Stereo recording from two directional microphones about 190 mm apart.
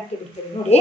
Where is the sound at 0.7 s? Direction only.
35° left (ahead or behind).